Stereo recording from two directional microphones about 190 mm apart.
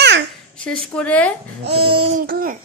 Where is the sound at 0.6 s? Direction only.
5° left (ahead or behind).